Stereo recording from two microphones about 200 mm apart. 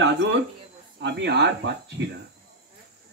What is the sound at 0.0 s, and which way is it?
Speech, 60° right (ahead or behind).